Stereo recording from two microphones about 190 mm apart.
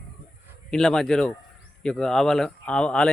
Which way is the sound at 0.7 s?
Centre (ahead or behind).